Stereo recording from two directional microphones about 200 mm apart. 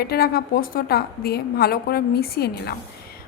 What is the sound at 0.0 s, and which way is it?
A woman's voice, 50° left (ahead or behind).